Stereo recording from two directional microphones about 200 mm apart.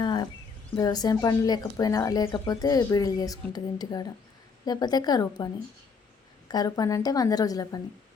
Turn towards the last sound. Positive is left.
turn(degrees=20)  # may be behind; listen again after turning